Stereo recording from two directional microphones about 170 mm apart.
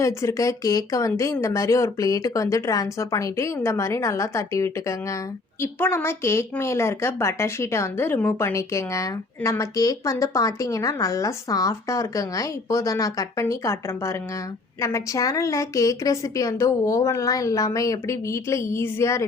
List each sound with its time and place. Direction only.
0.0 s a woman's voice: 20° left (ahead or behind)